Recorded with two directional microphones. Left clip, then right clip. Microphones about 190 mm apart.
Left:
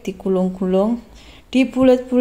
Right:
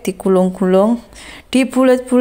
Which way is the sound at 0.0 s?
15° right (ahead or behind).